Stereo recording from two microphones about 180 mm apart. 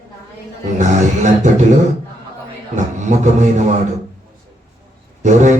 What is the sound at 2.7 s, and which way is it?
Speech, 40° right (ahead or behind).